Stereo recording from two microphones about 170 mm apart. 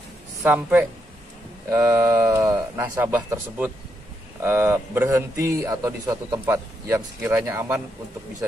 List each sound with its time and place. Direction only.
0.4 s a man's voice: 10° right (ahead or behind)